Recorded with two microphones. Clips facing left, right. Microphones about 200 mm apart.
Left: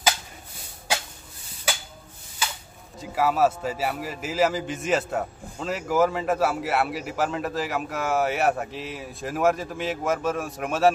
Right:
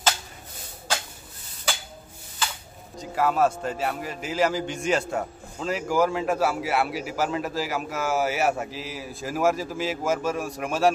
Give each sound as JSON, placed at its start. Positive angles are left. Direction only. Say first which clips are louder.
{"t": 3.0, "sound": "speech", "louder": "left 1 dB", "side_deg": 5}